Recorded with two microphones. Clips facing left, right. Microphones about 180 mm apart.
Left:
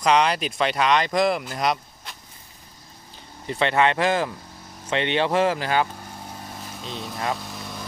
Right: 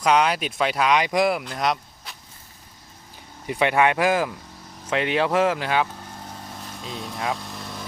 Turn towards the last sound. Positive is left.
turn(degrees=0)  # may be behind; listen again after turning